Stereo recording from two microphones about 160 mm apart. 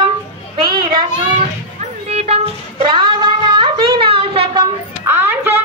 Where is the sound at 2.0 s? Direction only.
40° right (ahead or behind).